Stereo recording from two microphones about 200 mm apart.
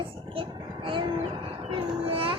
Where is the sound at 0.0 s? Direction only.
25° right (ahead or behind).